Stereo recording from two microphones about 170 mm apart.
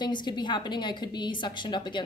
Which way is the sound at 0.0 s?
25° left (ahead or behind).